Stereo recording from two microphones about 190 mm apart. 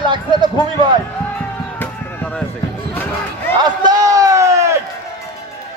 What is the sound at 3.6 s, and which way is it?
Run, 20° right (ahead or behind).